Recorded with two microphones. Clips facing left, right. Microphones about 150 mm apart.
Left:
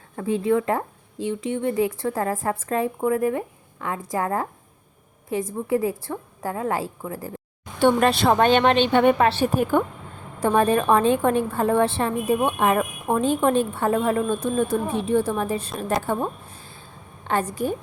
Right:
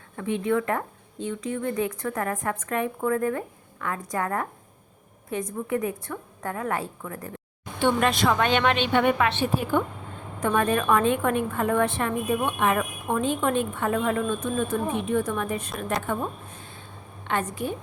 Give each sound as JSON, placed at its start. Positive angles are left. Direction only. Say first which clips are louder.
{"t": 0.2, "sound": "a woman's voice", "louder": "left 4 dB", "side_deg": 35}
{"t": 5.5, "sound": "a woman's voice", "louder": "left 4 dB", "side_deg": 30}
{"t": 7.8, "sound": "a woman's voice", "louder": "left 4 dB", "side_deg": 40}
{"t": 10.4, "sound": "a woman's voice", "louder": "left 4 dB", "side_deg": 30}